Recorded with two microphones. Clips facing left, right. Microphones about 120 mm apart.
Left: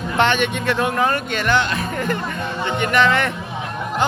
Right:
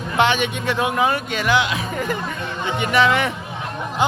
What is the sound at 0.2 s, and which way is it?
A man's voice, 10° right (ahead or behind).